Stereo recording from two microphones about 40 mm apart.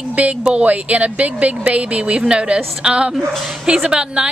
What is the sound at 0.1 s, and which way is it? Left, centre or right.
Speech, right.